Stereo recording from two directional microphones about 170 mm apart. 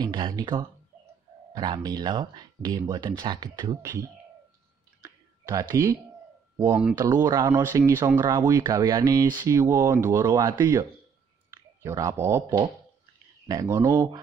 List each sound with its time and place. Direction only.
0.0 s speech: 25° right (ahead or behind)
5.0 s music: 20° right (ahead or behind)
6.5 s speech: 15° right (ahead or behind)
7.0 s speech: 25° right (ahead or behind)